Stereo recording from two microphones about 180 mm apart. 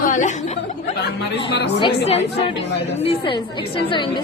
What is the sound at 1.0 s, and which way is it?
Speech, 65° left (ahead or behind).